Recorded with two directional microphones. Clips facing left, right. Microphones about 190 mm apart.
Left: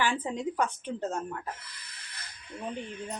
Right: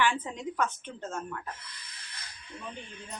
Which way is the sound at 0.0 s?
35° left (ahead or behind).